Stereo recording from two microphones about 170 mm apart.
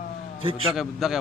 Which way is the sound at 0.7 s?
5° right (ahead or behind).